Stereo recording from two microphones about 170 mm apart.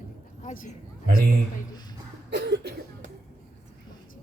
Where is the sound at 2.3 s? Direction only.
85° right.